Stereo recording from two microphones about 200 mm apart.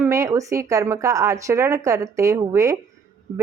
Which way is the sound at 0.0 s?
15° right (ahead or behind).